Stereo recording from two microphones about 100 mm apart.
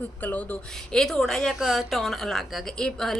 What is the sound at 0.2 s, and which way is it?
Speech, 15° left (ahead or behind).